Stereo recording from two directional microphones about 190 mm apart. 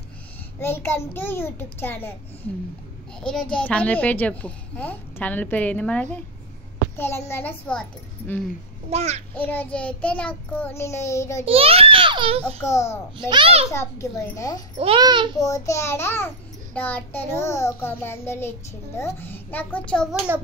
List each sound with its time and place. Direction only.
0.6 s child singing: 10° left (ahead or behind)
3.2 s child singing: 5° left (ahead or behind)
8.9 s a child's voice: 35° right (ahead or behind)
9.3 s child singing: 10° left (ahead or behind)
11.4 s a child's voice: 30° right (ahead or behind)
12.7 s child singing: 15° left (ahead or behind)
13.2 s a child's voice: 25° right (ahead or behind)
13.7 s child singing: 15° left (ahead or behind)
14.8 s a child's voice: 25° right (ahead or behind)
15.3 s child singing: 15° left (ahead or behind)